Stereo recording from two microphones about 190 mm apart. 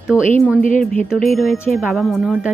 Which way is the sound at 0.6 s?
45° left (ahead or behind).